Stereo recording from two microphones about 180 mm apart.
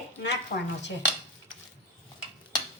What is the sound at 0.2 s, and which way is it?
Speech, 75° left (ahead or behind).